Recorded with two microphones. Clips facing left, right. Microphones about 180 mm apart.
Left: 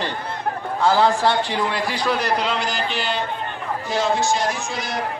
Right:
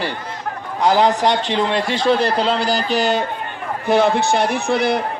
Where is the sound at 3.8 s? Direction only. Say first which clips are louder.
Right 6 dB; 60° right (ahead or behind).